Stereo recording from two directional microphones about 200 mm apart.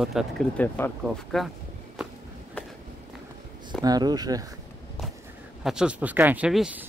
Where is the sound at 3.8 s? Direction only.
20° right (ahead or behind).